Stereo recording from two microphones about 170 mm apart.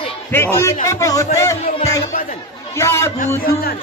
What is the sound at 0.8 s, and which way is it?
Music, 20° left (ahead or behind).